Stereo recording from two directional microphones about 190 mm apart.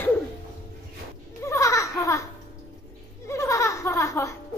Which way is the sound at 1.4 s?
15° left (ahead or behind).